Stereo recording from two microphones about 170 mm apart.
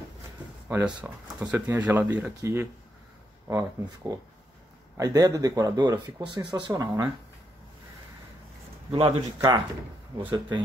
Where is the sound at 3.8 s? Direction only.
20° right (ahead or behind).